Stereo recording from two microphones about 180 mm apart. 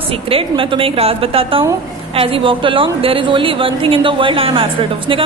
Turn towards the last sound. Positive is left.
turn(degrees=-30)  # may be behind; listen again after turning